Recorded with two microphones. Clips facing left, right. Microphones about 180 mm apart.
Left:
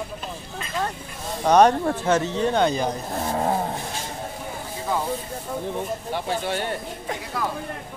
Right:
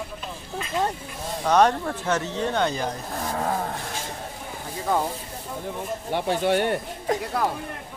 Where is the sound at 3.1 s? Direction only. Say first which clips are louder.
Left 3 dB; 30° left (ahead or behind).